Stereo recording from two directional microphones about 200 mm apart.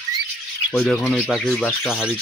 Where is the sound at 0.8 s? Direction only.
5° left (ahead or behind).